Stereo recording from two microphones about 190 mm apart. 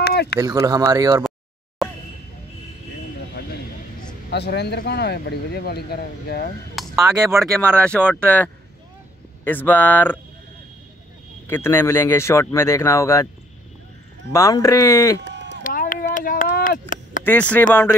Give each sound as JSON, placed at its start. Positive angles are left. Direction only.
{"t": 0.0, "sound": "a sound", "side_deg": 60}
{"t": 0.4, "sound": "speech", "side_deg": -20}
{"t": 4.3, "sound": "speech", "side_deg": 60}
{"t": 7.0, "sound": "speech", "side_deg": -15}
{"t": 7.7, "sound": "speech", "side_deg": 5}
{"t": 11.4, "sound": "speech", "side_deg": 10}
{"t": 14.3, "sound": "speech", "side_deg": 15}
{"t": 15.2, "sound": "a sound", "side_deg": -70}
{"t": 15.6, "sound": "a sound", "side_deg": 45}
{"t": 17.2, "sound": "speech", "side_deg": 10}